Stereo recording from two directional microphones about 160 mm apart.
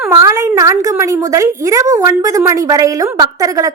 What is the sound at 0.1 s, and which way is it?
A woman's voice, 20° right (ahead or behind).